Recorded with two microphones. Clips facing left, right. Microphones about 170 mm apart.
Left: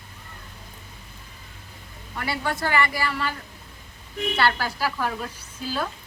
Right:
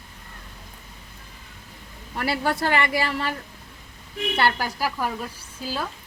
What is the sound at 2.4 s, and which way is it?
Speech, 25° right (ahead or behind).